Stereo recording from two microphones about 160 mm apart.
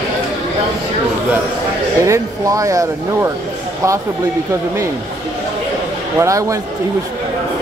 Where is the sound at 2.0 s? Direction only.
20° right (ahead or behind).